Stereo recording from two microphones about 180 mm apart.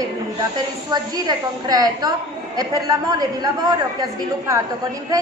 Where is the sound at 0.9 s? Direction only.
20° right (ahead or behind).